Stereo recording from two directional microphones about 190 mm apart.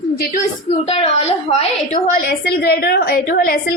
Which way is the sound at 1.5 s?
35° left (ahead or behind).